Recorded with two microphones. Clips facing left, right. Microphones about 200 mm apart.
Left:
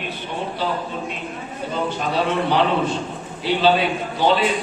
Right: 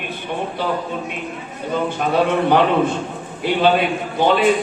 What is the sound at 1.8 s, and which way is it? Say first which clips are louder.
A man's voice: right 4 dB; 50° right (ahead or behind).